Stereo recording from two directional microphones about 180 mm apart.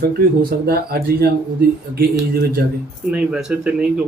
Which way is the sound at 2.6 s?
60° right (ahead or behind).